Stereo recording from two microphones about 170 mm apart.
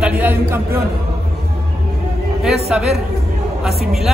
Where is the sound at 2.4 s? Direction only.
Centre (ahead or behind).